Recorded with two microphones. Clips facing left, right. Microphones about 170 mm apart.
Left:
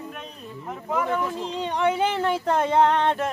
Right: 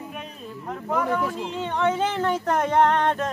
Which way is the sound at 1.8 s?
15° left (ahead or behind).